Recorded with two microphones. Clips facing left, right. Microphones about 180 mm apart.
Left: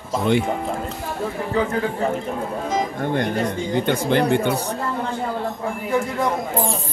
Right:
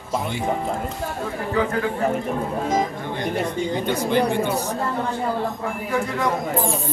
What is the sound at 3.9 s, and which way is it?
Speech, 60° left (ahead or behind).